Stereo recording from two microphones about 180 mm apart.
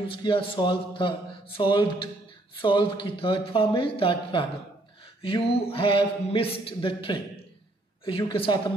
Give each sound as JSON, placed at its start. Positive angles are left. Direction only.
{"t": 0.1, "sound": "speech", "side_deg": 30}